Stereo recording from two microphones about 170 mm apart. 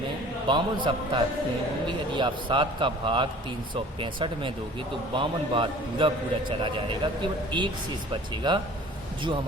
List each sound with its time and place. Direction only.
0.4 s a man's voice: 25° right (ahead or behind)